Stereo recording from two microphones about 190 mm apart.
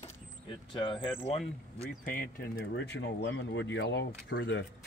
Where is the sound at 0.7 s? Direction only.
25° left (ahead or behind).